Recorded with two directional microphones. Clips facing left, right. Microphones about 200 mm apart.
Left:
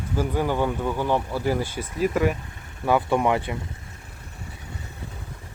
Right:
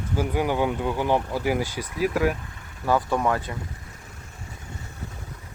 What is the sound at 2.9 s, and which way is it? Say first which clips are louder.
Speech: left 2 dB; 15° left (ahead or behind).